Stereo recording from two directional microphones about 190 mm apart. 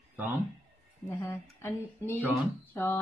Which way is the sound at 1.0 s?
15° left (ahead or behind).